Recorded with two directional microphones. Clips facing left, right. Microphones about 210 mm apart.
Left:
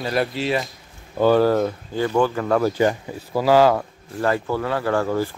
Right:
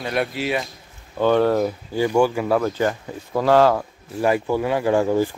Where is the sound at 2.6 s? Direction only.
15° left (ahead or behind).